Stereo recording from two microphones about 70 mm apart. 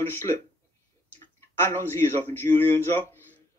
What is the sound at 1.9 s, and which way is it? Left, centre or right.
Speech, left.